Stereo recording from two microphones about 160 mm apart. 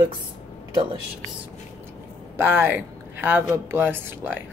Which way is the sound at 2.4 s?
15° right (ahead or behind).